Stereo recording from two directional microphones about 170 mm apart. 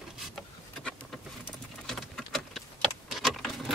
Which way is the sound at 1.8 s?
Centre (ahead or behind).